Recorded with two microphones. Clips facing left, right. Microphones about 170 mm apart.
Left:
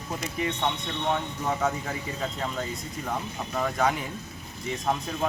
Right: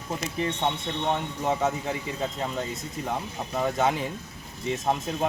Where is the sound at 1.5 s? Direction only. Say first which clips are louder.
Right 2 dB; 20° right (ahead or behind).